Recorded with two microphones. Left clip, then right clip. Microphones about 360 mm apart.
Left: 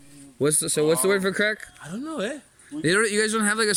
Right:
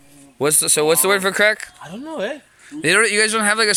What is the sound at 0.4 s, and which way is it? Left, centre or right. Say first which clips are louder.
Speech: right 5 dB; centre.